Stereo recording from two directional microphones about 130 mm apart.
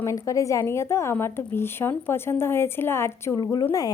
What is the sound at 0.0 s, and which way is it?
Speech, 25° left (ahead or behind).